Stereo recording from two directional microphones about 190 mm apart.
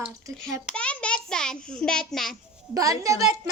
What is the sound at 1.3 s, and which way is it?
A child's voice, 5° left (ahead or behind).